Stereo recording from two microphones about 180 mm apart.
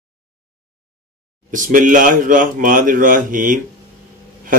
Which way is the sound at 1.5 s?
45° right (ahead or behind).